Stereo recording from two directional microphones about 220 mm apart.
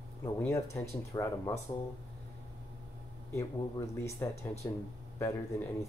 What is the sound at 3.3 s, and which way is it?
Speech, 15° left (ahead or behind).